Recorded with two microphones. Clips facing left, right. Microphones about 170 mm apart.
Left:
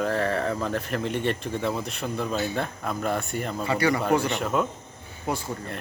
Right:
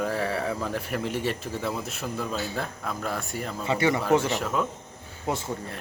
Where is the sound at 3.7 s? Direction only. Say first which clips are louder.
Even; 25° right (ahead or behind).